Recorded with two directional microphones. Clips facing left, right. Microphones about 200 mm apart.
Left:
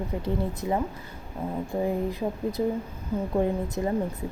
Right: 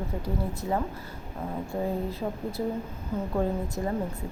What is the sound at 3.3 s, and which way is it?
Speech, 15° left (ahead or behind).